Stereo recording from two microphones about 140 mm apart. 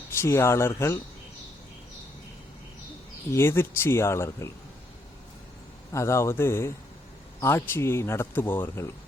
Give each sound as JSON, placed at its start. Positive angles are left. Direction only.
{"t": 0.1, "sound": "speech", "side_deg": 20}
{"t": 3.3, "sound": "speech", "side_deg": 15}
{"t": 5.9, "sound": "speech", "side_deg": 20}